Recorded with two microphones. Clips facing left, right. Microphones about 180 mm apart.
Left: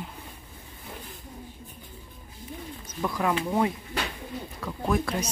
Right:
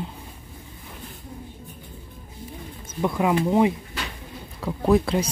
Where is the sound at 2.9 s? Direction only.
20° right (ahead or behind).